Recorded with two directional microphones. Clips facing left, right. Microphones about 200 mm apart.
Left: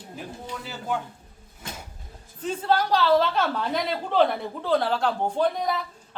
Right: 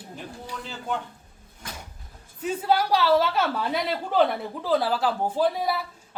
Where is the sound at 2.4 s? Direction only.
10° right (ahead or behind).